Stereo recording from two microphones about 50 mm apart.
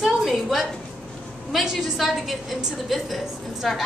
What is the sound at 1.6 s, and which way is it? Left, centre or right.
Speech, centre.